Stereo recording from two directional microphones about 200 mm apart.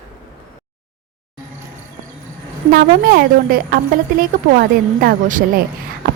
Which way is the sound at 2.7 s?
45° right (ahead or behind).